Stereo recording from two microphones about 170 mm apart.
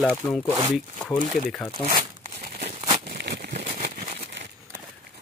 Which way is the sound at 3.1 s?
75° right (ahead or behind).